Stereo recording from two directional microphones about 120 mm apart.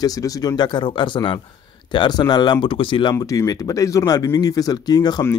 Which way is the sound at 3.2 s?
25° left (ahead or behind).